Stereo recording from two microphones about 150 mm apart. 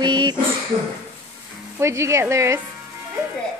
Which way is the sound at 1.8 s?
20° right (ahead or behind).